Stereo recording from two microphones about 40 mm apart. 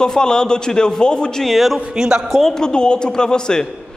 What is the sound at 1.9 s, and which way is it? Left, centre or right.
Speech, centre.